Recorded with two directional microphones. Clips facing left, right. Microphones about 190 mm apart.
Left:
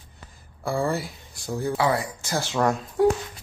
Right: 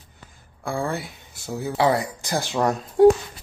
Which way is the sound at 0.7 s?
Centre (ahead or behind).